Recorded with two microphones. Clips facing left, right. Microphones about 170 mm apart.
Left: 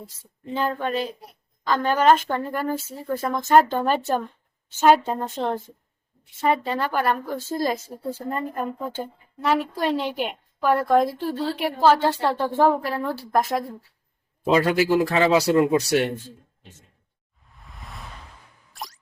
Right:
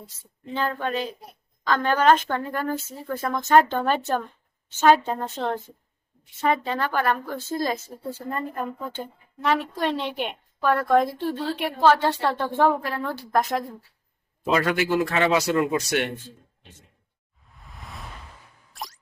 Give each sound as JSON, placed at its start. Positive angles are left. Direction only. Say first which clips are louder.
{"t": 0.5, "sound": "a woman's voice", "louder": "left 2 dB", "side_deg": 5}
{"t": 14.4, "sound": "speech", "louder": "left 3 dB", "side_deg": 30}
{"t": 17.5, "sound": "a sound", "louder": "even", "side_deg": 0}